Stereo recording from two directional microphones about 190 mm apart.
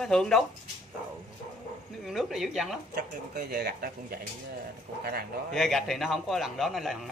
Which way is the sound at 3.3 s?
55° right (ahead or behind).